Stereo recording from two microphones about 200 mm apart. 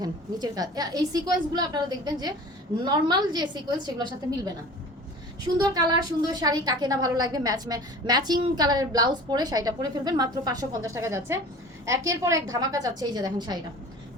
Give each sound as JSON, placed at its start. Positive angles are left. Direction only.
{"t": 0.0, "sound": "a woman's voice", "side_deg": -20}
{"t": 5.5, "sound": "a woman's voice", "side_deg": -20}